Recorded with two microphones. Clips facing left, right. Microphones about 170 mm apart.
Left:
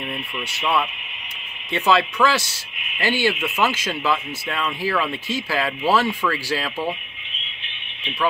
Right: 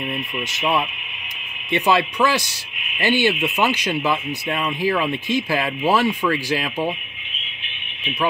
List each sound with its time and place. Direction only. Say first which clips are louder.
0.1 s speech: right 3 dB; 20° right (ahead or behind)